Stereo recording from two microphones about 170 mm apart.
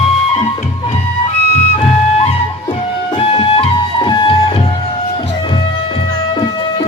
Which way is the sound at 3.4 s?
30° left (ahead or behind).